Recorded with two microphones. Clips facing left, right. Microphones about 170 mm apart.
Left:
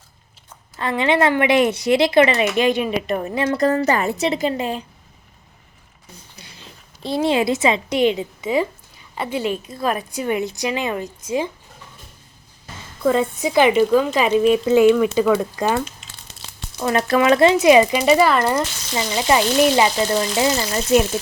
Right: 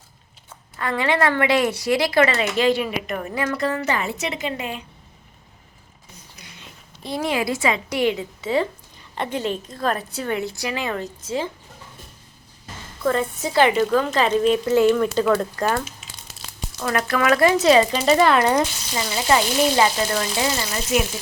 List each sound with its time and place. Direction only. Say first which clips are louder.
0.8 s speech: left 3 dB; 20° left (ahead or behind)
3.6 s a woman's voice: left 8 dB; 40° left (ahead or behind)
6.4 s a woman's voice: left 1 dB; 30° left (ahead or behind); by 11.4 s 15° left (ahead or behind)
13.1 s a woman's voice: left 4 dB; 15° left (ahead or behind)
14.9 s a woman's voice: left 2 dB; 5° left (ahead or behind)
18.9 s a woman's voice: left 2 dB; 15° left (ahead or behind)